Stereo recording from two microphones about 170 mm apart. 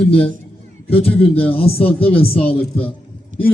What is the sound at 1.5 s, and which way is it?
Speech, 35° left (ahead or behind).